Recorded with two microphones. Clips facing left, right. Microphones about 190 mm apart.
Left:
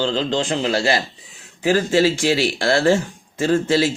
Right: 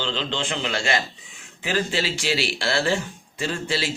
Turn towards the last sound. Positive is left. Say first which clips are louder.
# left 9 dB
turn(degrees=45)  # may be behind; listen again after turning